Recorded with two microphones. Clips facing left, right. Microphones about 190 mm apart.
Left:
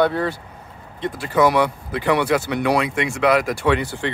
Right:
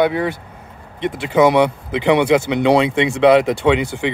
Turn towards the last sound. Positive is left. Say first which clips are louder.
# right 4 dB
turn(degrees=-15)  # may be behind; listen again after turning